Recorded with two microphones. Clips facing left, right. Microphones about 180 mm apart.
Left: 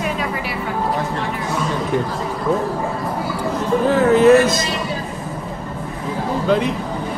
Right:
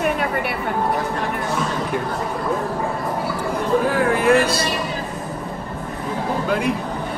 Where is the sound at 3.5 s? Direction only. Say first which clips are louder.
Left 2 dB; 10° right (ahead or behind).